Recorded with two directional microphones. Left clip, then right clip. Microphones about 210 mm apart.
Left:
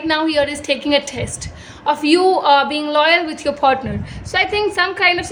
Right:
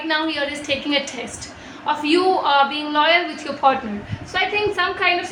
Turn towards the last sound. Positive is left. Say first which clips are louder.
# left 4 dB
turn(degrees=55)  # may be behind; listen again after turning